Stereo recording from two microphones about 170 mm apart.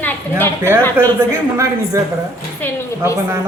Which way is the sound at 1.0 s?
15° right (ahead or behind).